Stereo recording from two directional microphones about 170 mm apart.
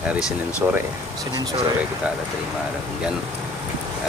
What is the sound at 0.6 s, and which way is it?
Speech, 15° right (ahead or behind).